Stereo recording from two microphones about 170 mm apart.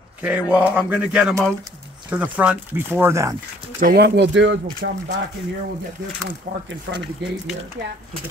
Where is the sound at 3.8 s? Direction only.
65° right (ahead or behind); by 5.2 s 90° right.